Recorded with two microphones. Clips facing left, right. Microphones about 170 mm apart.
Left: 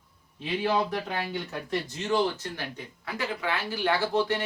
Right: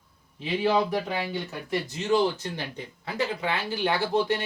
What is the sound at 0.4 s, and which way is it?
Speech, 10° right (ahead or behind).